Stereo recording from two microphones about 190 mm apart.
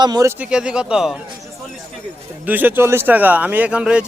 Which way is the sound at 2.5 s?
10° right (ahead or behind).